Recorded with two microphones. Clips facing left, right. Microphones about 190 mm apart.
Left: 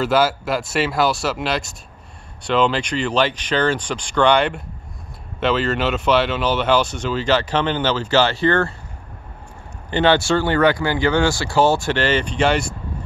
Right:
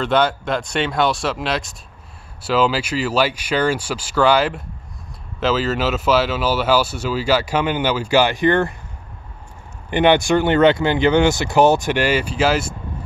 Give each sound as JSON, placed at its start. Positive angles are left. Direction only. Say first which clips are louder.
{"t": 0.0, "sound": "speech", "louder": "even", "side_deg": 5}
{"t": 9.8, "sound": "speech", "louder": "right 2 dB", "side_deg": -15}